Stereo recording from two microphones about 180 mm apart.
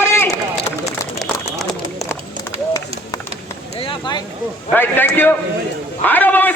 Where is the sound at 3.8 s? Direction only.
25° left (ahead or behind).